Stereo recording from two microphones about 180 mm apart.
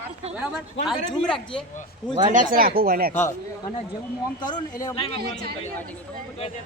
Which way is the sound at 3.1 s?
15° left (ahead or behind).